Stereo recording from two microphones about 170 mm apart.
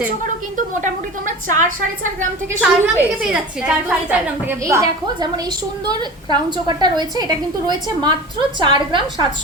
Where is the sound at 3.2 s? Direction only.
10° right (ahead or behind).